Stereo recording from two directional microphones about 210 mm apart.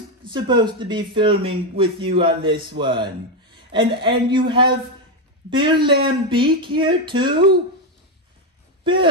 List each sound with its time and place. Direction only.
0.3 s speech: 20° right (ahead or behind)
8.8 s speech: 25° right (ahead or behind)